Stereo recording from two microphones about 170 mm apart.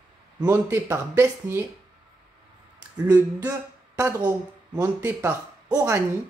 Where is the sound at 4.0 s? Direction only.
15° right (ahead or behind).